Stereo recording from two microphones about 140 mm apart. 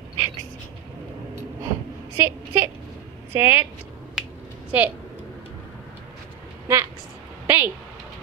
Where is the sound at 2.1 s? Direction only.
20° right (ahead or behind).